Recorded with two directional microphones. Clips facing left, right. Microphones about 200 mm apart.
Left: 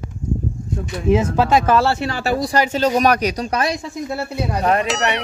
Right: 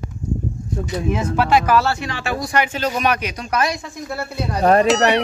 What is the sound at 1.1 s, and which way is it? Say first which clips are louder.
Speech: left 3 dB; 25° left (ahead or behind).